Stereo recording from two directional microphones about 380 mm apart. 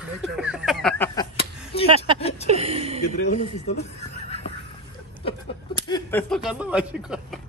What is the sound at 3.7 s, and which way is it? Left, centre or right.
Neigh, centre.